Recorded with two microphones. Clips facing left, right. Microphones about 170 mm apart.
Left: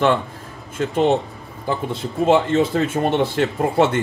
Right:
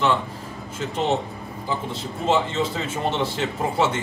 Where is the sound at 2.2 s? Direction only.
55° left (ahead or behind).